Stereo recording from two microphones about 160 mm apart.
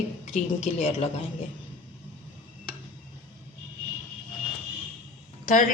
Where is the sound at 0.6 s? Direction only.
40° left (ahead or behind).